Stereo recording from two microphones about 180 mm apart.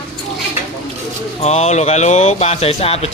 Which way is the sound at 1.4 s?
40° left (ahead or behind).